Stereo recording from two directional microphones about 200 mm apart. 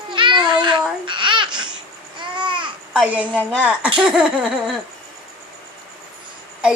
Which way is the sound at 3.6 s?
5° right (ahead or behind).